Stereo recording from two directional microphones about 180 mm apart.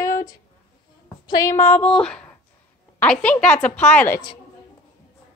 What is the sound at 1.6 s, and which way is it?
Female singing, 10° left (ahead or behind).